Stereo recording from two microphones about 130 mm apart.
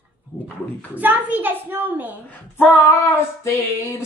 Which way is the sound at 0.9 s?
15° right (ahead or behind).